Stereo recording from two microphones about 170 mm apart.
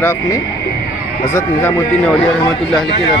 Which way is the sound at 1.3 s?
15° left (ahead or behind).